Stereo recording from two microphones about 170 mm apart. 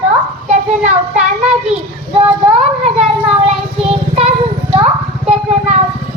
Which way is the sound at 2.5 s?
40° right (ahead or behind).